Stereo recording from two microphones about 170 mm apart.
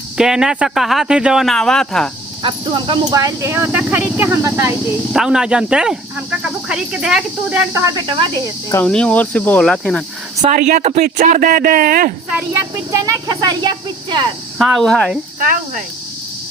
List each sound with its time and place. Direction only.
0.2 s speech: 5° right (ahead or behind)
2.4 s speech: 30° right (ahead or behind)
5.1 s speech: 5° right (ahead or behind)
7.7 s speech: 20° right (ahead or behind)
8.7 s speech: 10° left (ahead or behind)
10.4 s speech: 45° right (ahead or behind)
12.9 s speech: 20° right (ahead or behind)
14.6 s speech: centre (ahead or behind)